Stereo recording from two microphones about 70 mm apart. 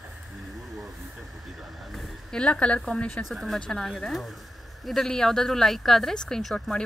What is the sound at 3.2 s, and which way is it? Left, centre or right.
Speech, centre.